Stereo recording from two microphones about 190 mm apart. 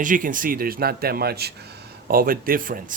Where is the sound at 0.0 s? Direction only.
45° right (ahead or behind).